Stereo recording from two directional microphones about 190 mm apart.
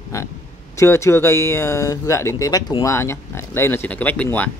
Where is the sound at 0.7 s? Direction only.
15° left (ahead or behind).